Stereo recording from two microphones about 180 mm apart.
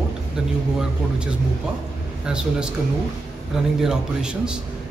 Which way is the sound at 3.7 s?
5° right (ahead or behind).